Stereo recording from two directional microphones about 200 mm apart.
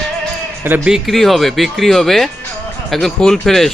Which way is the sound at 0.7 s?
5° right (ahead or behind).